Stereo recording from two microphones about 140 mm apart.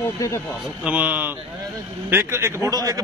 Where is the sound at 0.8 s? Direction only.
10° right (ahead or behind).